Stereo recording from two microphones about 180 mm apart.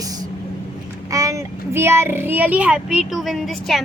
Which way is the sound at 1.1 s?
20° right (ahead or behind).